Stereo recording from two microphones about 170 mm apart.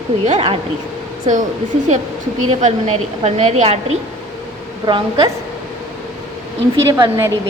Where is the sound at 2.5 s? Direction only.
40° right (ahead or behind).